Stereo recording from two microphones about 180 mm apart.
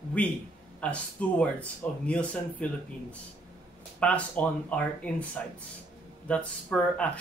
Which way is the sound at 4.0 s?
10° left (ahead or behind).